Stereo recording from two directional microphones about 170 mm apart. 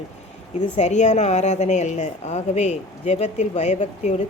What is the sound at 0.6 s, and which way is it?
A woman's voice, 45° left (ahead or behind).